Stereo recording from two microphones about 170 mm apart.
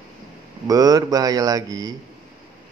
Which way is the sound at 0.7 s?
20° right (ahead or behind).